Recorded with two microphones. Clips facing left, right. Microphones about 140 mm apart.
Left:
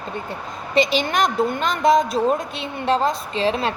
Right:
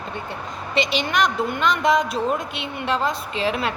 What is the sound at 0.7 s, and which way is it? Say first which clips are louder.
Speech: left 3 dB; 40° left (ahead or behind).